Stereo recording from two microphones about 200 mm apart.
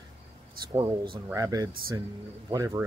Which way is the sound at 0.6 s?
20° right (ahead or behind).